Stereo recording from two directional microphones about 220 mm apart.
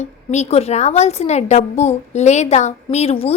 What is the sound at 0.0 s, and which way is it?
A woman's voice, 30° left (ahead or behind).